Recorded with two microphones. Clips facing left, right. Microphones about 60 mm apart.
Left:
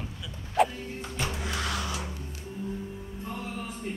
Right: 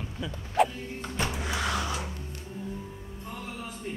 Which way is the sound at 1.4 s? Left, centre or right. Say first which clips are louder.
Right 2 dB; centre.